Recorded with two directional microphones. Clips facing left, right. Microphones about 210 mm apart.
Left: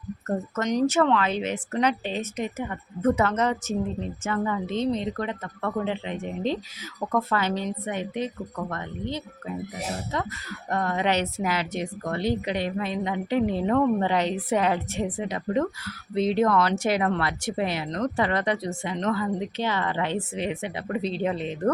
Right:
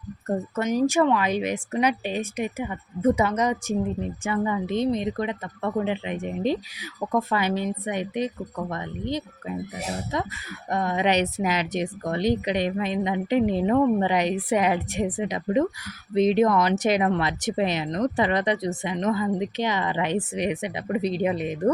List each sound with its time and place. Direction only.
0.3 s a woman's voice: 10° right (ahead or behind)
10.7 s a woman's voice: 15° right (ahead or behind)